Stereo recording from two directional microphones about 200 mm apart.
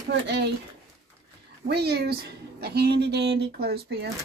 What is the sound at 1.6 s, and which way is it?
A woman's voice, 55° right (ahead or behind).